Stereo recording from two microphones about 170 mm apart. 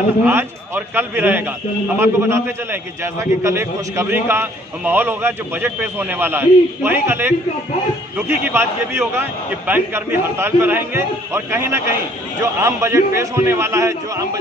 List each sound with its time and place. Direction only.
0.2 s a man's voice: 10° right (ahead or behind)